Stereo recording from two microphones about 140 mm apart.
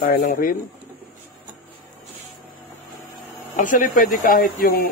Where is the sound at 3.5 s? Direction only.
70° left (ahead or behind); by 4.9 s 90° left.